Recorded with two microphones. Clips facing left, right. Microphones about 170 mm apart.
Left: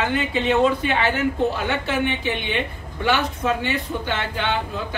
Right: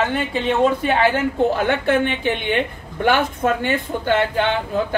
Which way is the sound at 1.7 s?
55° right (ahead or behind).